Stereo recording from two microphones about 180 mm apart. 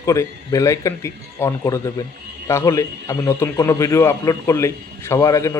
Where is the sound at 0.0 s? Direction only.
15° left (ahead or behind).